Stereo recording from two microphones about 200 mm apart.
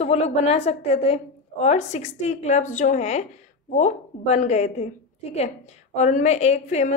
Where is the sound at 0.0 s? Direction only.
30° left (ahead or behind).